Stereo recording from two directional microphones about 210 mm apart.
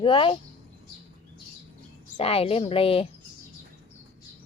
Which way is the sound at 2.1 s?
25° left (ahead or behind).